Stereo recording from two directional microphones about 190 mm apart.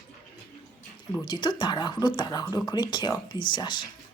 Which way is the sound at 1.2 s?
25° left (ahead or behind).